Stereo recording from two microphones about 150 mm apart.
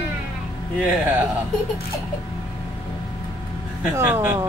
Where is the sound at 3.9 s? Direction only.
15° right (ahead or behind).